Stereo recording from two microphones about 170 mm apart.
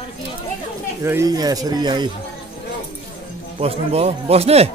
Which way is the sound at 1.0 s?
20° right (ahead or behind).